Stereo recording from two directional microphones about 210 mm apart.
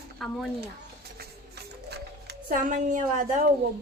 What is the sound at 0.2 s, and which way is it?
Speech, centre (ahead or behind).